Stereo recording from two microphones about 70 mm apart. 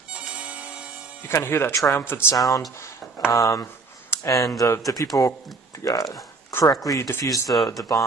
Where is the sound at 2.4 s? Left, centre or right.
Left.